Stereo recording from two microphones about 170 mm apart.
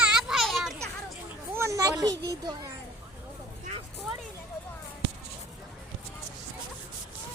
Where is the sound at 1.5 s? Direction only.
15° right (ahead or behind).